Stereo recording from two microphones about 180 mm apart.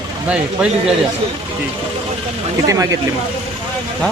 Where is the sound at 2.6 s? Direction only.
20° right (ahead or behind).